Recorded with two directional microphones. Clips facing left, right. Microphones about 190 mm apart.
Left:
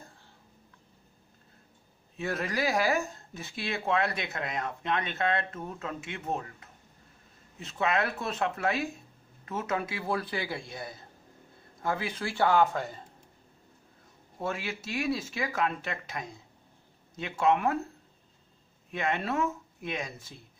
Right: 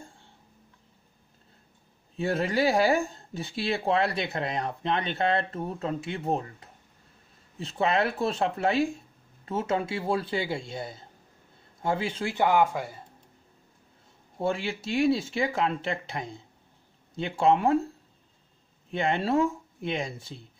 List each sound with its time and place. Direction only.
2.1 s speech: 30° right (ahead or behind); by 13.0 s 10° right (ahead or behind)
14.4 s speech: 30° right (ahead or behind)
18.9 s speech: 30° right (ahead or behind)